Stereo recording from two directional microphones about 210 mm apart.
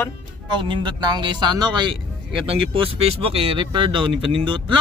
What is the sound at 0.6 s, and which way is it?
Speech, 20° right (ahead or behind).